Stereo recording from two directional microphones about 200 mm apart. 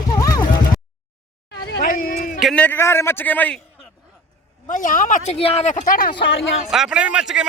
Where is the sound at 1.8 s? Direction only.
45° left (ahead or behind).